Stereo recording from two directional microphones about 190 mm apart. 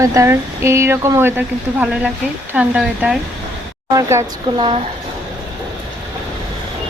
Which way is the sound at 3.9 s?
15° right (ahead or behind).